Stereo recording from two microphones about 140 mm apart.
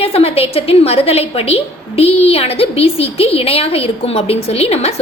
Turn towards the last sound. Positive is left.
turn(degrees=45)  # may be behind; listen again after turning